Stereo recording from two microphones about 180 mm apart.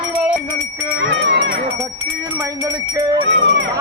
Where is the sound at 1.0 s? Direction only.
90° right.